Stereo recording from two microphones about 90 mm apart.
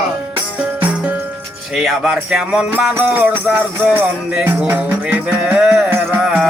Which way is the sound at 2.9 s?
20° right (ahead or behind).